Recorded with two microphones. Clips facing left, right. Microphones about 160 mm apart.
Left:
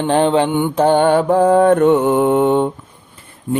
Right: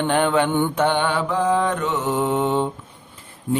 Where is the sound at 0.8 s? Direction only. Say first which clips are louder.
Left 8 dB; 40° left (ahead or behind).